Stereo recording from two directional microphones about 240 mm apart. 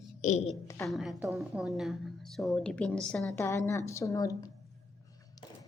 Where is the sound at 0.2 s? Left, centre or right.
Left.